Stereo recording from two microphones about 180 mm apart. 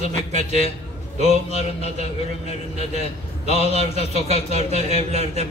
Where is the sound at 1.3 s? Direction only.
35° left (ahead or behind).